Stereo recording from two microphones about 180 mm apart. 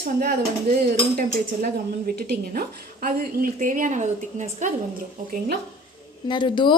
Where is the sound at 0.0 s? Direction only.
55° right (ahead or behind).